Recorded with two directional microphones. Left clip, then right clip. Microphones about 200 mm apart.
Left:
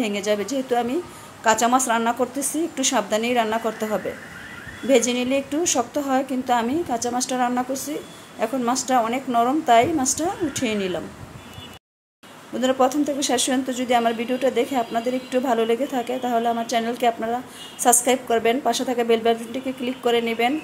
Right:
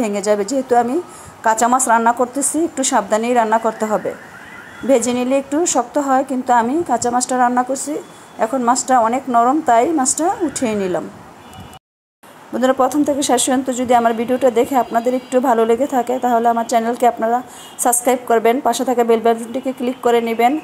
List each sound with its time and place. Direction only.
0.0 s a woman's voice: 15° right (ahead or behind)
7.3 s a woman's voice: 5° right (ahead or behind)
12.5 s a woman's voice: 15° right (ahead or behind)